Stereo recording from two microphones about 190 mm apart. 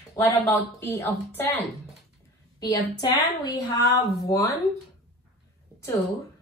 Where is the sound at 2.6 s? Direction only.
20° left (ahead or behind).